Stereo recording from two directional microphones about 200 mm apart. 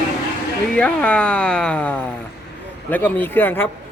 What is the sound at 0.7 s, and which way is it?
A man's voice, 5° left (ahead or behind).